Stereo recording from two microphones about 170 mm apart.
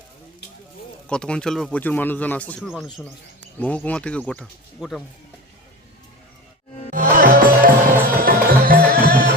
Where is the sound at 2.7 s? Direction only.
Centre (ahead or behind).